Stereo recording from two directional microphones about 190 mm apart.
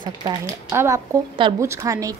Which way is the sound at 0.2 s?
15° right (ahead or behind).